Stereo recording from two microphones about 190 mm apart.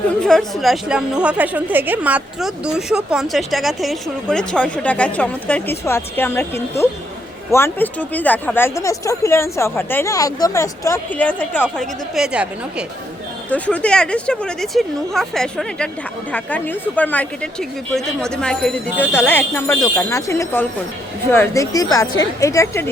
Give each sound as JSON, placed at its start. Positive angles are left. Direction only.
{"t": 0.2, "sound": "a woman's voice", "side_deg": 0}
{"t": 13.5, "sound": "a woman's voice", "side_deg": 5}